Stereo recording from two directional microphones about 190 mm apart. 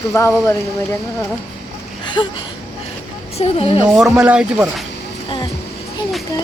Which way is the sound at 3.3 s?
30° left (ahead or behind).